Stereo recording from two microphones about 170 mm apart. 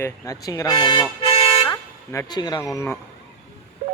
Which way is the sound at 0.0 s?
20° left (ahead or behind).